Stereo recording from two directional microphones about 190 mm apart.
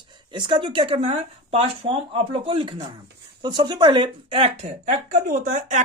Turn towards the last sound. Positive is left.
turn(degrees=-40)  # may be behind; listen again after turning